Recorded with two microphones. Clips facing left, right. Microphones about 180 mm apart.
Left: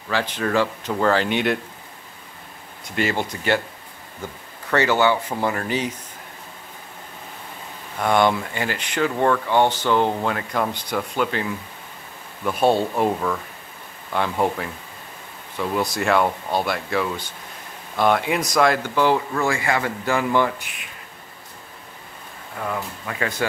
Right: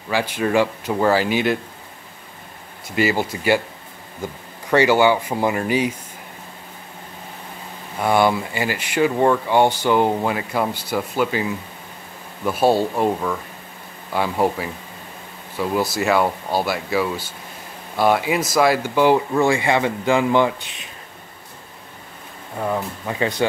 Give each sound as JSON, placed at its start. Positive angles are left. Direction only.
{"t": 0.1, "sound": "speech", "side_deg": -10}
{"t": 3.0, "sound": "speech", "side_deg": -5}
{"t": 8.0, "sound": "speech", "side_deg": -5}
{"t": 22.6, "sound": "speech", "side_deg": -25}